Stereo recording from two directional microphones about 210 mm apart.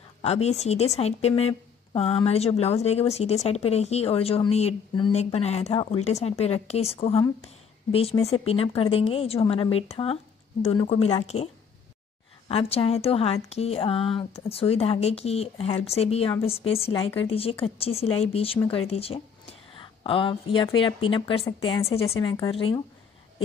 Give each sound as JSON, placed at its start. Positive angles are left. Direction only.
{"t": 0.2, "sound": "a woman's voice", "side_deg": 30}
{"t": 12.4, "sound": "a woman's voice", "side_deg": 25}